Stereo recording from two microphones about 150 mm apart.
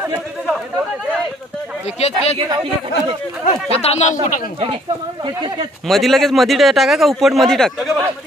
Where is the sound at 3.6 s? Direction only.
45° left (ahead or behind).